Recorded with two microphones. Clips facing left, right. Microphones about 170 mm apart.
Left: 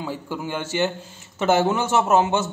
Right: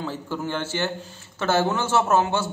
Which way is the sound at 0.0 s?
15° left (ahead or behind).